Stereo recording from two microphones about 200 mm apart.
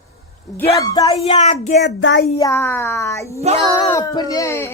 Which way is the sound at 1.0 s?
30° left (ahead or behind).